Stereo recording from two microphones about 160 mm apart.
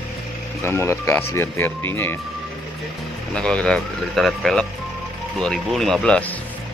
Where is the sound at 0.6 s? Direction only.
15° left (ahead or behind).